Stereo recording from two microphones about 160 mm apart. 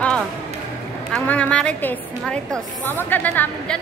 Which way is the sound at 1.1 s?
10° left (ahead or behind).